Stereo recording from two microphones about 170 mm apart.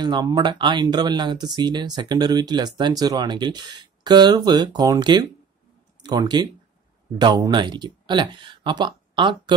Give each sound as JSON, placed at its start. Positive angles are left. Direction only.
{"t": 0.0, "sound": "speech", "side_deg": -25}